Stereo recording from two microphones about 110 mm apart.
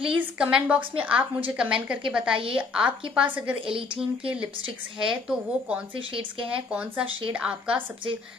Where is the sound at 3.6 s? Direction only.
50° right (ahead or behind).